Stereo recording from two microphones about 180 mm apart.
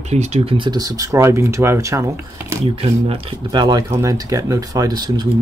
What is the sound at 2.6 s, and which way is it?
Speech, 30° right (ahead or behind).